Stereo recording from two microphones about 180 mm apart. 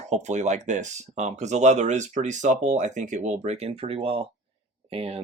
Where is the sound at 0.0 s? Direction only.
40° right (ahead or behind).